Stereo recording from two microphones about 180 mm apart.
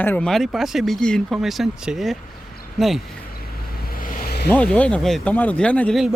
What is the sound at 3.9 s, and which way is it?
Vehicle, 50° left (ahead or behind).